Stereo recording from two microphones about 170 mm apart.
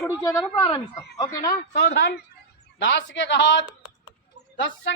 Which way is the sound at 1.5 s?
80° left.